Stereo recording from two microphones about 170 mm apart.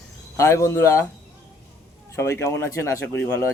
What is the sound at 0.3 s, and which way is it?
Speech, 15° left (ahead or behind).